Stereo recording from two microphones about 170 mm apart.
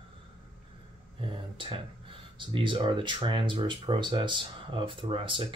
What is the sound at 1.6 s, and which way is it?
Speech, 30° right (ahead or behind).